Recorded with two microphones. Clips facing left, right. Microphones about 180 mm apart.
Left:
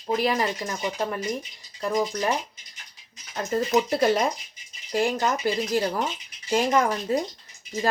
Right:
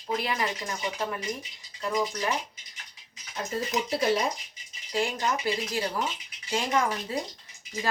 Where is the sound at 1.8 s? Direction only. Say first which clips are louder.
Left 4 dB; 40° left (ahead or behind).